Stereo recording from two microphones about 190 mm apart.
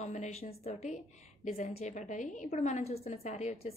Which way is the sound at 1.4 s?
45° left (ahead or behind).